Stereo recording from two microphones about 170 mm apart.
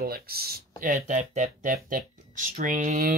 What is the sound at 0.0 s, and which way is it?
Speech, 65° right (ahead or behind).